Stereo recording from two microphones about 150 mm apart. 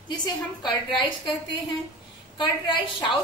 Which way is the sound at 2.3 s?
30° left (ahead or behind).